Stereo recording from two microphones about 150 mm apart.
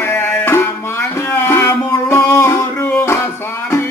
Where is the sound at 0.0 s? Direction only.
15° left (ahead or behind).